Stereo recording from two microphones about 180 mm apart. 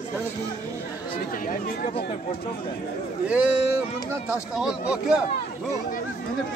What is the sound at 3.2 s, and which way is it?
Speech, 10° right (ahead or behind).